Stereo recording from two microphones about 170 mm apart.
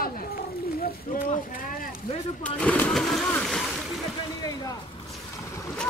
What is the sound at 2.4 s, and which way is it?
Speech, 10° left (ahead or behind).